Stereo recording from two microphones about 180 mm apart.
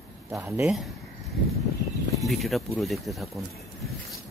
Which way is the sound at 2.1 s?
Centre (ahead or behind).